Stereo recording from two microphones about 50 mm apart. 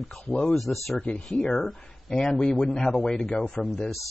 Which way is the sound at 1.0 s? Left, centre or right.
Centre.